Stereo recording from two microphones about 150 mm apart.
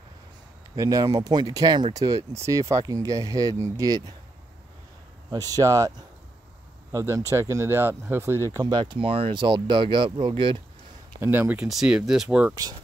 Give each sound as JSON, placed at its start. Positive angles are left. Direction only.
{"t": 0.7, "sound": "speech", "side_deg": -25}
{"t": 5.3, "sound": "speech", "side_deg": -25}
{"t": 11.1, "sound": "speech", "side_deg": -15}